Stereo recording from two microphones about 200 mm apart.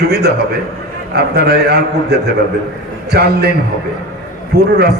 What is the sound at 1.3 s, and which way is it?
Speech, 55° right (ahead or behind).